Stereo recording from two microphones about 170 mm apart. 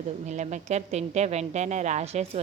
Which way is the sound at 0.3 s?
40° right (ahead or behind).